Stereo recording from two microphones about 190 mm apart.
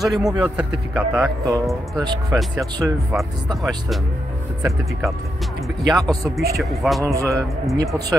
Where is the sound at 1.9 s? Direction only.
20° right (ahead or behind).